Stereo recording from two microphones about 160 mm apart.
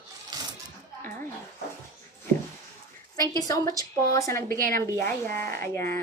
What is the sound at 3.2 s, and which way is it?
Speech, 20° left (ahead or behind).